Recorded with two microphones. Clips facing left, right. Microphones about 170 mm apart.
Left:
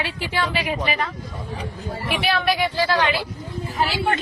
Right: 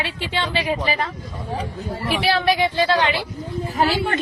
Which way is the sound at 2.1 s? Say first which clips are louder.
Right 3 dB; 30° right (ahead or behind).